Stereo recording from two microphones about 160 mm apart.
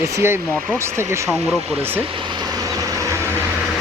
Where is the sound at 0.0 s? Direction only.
15° right (ahead or behind).